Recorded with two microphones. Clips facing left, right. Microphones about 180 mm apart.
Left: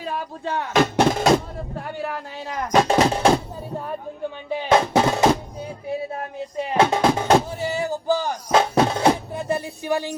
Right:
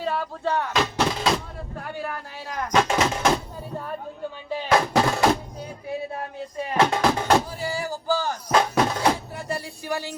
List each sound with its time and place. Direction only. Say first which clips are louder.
0.0 s music: right 2 dB; 15° left (ahead or behind)
0.7 s speech: left 6 dB; 50° left (ahead or behind)
2.7 s speech: left 4 dB; 35° left (ahead or behind)
4.7 s music: left 3 dB; 20° left (ahead or behind)
6.6 s speech: left 3 dB; 25° left (ahead or behind)